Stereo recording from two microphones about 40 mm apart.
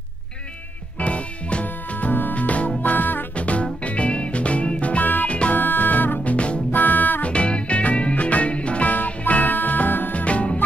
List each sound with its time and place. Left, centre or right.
0.9 s music: left
3.3 s music: left
5.0 s music: left
5.3 s music: left
5.6 s music: left
6.2 s music: left
6.7 s music: left
7.2 s music: left
8.9 s music: left
10.1 s music: left